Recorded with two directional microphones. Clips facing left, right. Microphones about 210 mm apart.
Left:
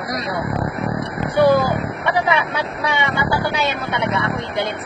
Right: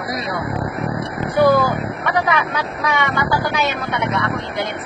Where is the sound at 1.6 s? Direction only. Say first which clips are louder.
Even; 30° left (ahead or behind).